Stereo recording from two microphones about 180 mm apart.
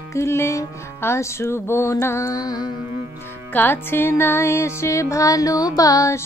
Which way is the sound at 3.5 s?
10° left (ahead or behind).